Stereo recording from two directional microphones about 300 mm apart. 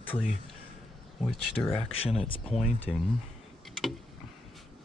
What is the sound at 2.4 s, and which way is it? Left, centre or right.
Speech, centre.